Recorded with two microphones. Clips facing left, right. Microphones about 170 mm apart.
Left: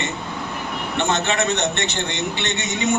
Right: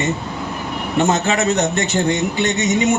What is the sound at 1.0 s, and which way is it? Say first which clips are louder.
A man's voice: right 4 dB; 40° right (ahead or behind).